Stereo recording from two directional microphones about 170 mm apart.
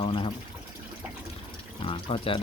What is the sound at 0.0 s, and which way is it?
Speech, 35° left (ahead or behind).